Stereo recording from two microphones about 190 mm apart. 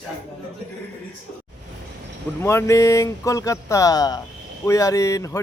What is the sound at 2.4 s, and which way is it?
Speech, 15° left (ahead or behind).